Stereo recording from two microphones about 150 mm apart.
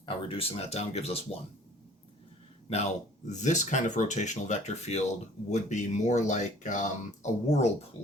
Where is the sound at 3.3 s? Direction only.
55° left (ahead or behind).